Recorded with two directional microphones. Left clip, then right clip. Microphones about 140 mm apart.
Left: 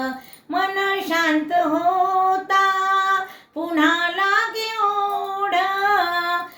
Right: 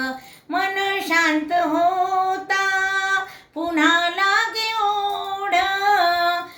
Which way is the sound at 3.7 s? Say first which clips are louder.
Right 1 dB; 25° right (ahead or behind).